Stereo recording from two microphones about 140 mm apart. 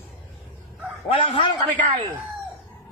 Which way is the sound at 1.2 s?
35° left (ahead or behind).